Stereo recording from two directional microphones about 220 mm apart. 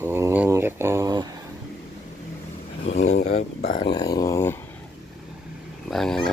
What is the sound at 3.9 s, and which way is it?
Speech, 15° left (ahead or behind).